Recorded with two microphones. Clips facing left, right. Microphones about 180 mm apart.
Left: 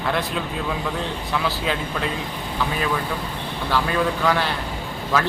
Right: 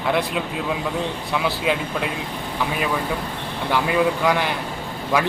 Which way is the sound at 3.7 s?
15° right (ahead or behind).